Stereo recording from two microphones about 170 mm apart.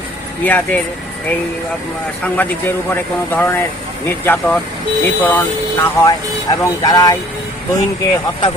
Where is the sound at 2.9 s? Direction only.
10° left (ahead or behind).